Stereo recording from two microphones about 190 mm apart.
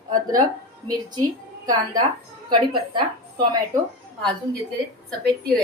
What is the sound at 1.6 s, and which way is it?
Speech, 20° right (ahead or behind).